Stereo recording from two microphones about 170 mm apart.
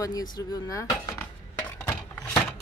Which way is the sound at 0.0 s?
20° left (ahead or behind).